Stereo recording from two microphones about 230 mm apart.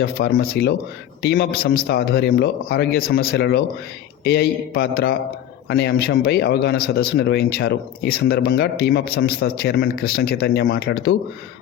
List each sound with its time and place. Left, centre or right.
0.0 s speech: left